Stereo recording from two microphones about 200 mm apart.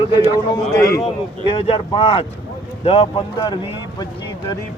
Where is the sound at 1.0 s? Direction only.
30° left (ahead or behind).